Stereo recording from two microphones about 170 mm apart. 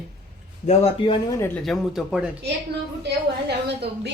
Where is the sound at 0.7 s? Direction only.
30° left (ahead or behind).